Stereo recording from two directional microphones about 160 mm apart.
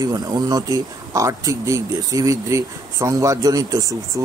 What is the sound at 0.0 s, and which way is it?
Speech, 25° right (ahead or behind).